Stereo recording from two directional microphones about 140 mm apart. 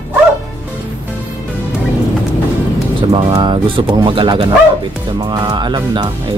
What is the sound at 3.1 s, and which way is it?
Speech, 35° right (ahead or behind).